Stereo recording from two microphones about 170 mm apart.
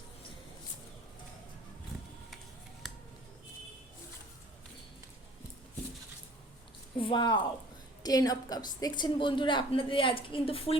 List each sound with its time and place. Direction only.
7.0 s a woman's voice: 30° left (ahead or behind)